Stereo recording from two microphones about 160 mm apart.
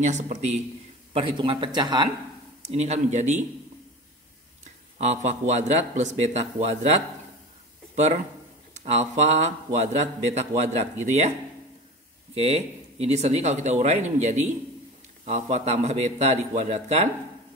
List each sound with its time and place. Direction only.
0.0 s a man's voice: 45° right (ahead or behind)
1.1 s speech: 30° right (ahead or behind)
2.6 s a man's voice: 40° right (ahead or behind)
4.9 s a man's voice: 45° right (ahead or behind)
12.4 s a man's voice: 40° right (ahead or behind)